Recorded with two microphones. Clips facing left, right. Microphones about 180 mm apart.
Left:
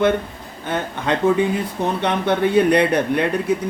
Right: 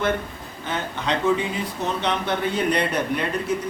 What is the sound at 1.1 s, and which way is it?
Speech, 55° left (ahead or behind).